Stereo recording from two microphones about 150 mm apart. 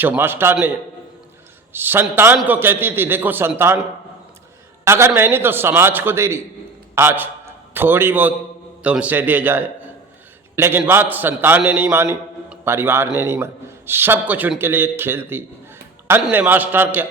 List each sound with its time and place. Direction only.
0.0 s a man's voice: 15° right (ahead or behind)
1.7 s a man's voice: 15° right (ahead or behind)
4.9 s a man's voice: 15° right (ahead or behind)